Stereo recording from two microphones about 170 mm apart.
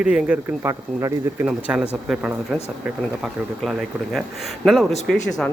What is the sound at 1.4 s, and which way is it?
A man's voice, 5° right (ahead or behind).